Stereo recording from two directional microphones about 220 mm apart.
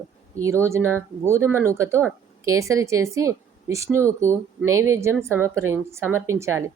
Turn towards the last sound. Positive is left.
turn(degrees=-10)  # may be behind; listen again after turning